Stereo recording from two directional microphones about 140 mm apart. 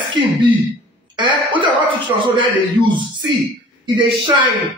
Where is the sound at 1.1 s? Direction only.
35° right (ahead or behind).